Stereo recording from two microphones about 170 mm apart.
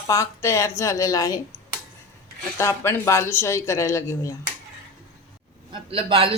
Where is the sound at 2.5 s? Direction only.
15° left (ahead or behind).